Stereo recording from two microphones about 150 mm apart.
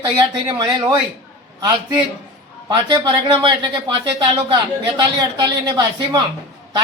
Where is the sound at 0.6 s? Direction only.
30° right (ahead or behind).